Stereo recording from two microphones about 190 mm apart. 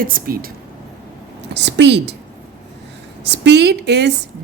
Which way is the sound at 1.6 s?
65° right (ahead or behind).